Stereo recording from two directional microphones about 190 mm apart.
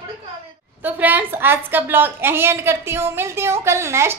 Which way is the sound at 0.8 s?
10° right (ahead or behind).